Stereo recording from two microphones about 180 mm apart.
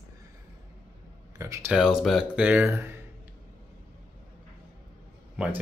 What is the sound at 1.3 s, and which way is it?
Speech, 15° right (ahead or behind).